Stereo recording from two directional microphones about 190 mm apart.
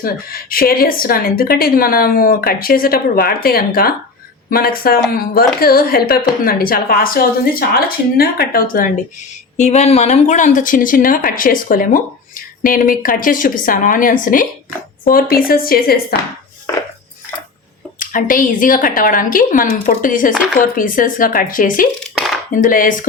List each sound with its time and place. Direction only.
0.0 s speech: 50° left (ahead or behind)
9.3 s speech: 35° left (ahead or behind); by 16.1 s 50° left (ahead or behind)
18.0 s speech: 45° left (ahead or behind)